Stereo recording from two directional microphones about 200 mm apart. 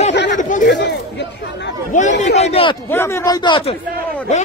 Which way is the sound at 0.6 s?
60° left (ahead or behind).